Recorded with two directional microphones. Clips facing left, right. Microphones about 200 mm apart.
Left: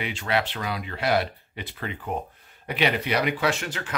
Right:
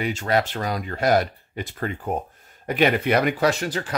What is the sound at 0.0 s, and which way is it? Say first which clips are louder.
Speech: right 4 dB; 45° right (ahead or behind).